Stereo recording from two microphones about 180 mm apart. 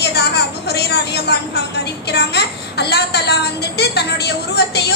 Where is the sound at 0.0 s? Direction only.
65° left (ahead or behind).